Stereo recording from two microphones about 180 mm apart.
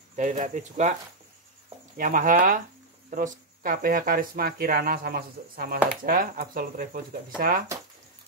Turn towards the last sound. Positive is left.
turn(degrees=-55)  # may be behind; listen again after turning